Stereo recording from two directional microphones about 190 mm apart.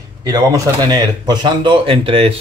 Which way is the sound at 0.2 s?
20° right (ahead or behind).